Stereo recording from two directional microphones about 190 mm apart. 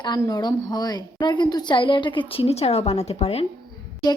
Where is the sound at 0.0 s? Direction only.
20° left (ahead or behind).